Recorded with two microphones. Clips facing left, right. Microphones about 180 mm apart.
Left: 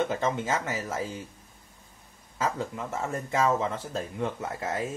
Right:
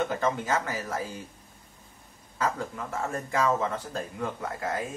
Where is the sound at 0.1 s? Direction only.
25° left (ahead or behind).